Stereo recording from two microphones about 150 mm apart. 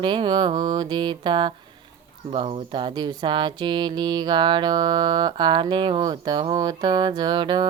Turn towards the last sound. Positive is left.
turn(degrees=-30)  # may be behind; listen again after turning